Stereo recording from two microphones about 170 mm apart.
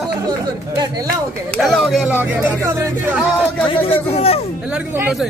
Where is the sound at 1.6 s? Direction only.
Centre (ahead or behind).